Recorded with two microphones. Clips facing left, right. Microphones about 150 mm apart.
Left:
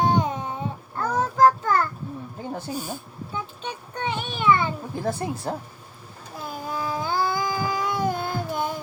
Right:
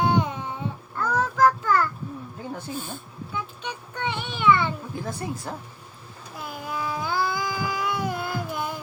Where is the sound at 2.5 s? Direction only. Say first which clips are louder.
Left 3 dB; 40° left (ahead or behind).